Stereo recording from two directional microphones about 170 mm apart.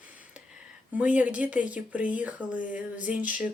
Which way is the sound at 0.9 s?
5° right (ahead or behind).